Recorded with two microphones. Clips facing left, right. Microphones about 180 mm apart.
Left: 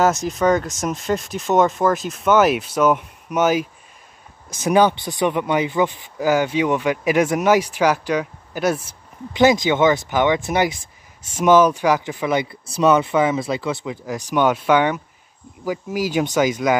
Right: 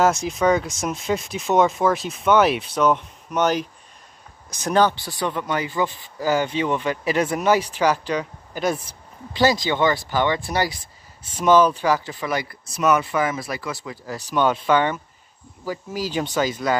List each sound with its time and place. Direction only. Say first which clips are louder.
0.3 s speech: left 1 dB; centre (ahead or behind)
4.6 s speech: left 3 dB; 10° left (ahead or behind)
9.4 s speech: left 4 dB; 20° left (ahead or behind)
12.7 s speech: left 4 dB; 25° left (ahead or behind)